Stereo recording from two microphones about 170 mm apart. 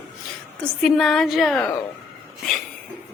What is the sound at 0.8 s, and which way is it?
Speech, centre (ahead or behind).